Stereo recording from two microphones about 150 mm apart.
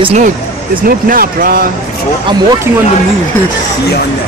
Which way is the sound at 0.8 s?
70° right (ahead or behind).